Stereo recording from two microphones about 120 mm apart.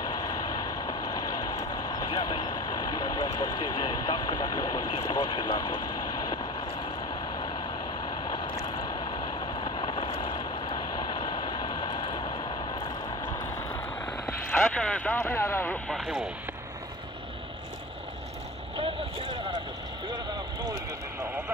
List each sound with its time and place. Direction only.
0.0 s vehicle: 35° left (ahead or behind)
1.7 s speech: 35° left (ahead or behind)
7.3 s vehicle: 45° left (ahead or behind)
10.7 s vehicle: 40° left (ahead or behind)
14.4 s a sound: 15° left (ahead or behind)
15.9 s speech: centre (ahead or behind)
18.8 s boat: 45° right (ahead or behind)
20.1 s vehicle: 35° right (ahead or behind)